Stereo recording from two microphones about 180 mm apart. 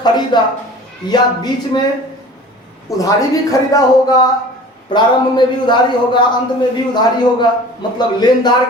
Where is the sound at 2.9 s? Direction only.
20° left (ahead or behind).